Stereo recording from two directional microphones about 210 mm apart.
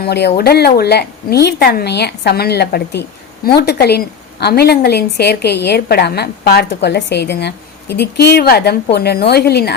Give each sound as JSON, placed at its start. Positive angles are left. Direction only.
{"t": 0.0, "sound": "a woman's voice", "side_deg": 50}